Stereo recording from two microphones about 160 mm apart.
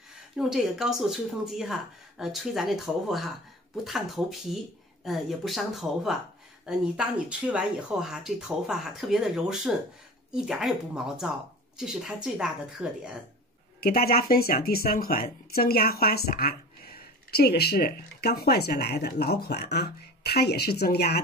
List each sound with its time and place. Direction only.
0.4 s speech: 5° right (ahead or behind)
13.7 s speech: 70° left (ahead or behind)